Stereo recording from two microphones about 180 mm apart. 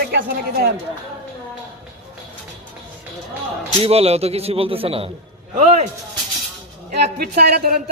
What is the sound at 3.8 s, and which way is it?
Speech, 35° right (ahead or behind).